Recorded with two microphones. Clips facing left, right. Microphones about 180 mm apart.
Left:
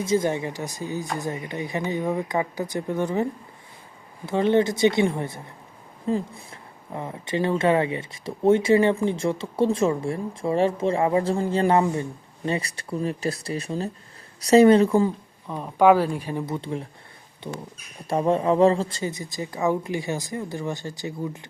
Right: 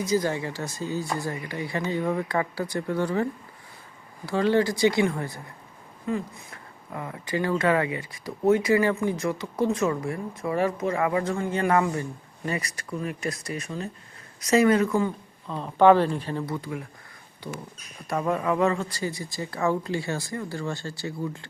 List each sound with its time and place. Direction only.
0.0 s speech: 25° left (ahead or behind)
4.3 s speech: 20° left (ahead or behind)
15.4 s speech: 10° left (ahead or behind)
16.5 s speech: 30° left (ahead or behind)